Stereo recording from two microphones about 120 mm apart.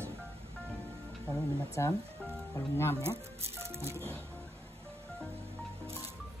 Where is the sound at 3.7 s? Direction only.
20° right (ahead or behind).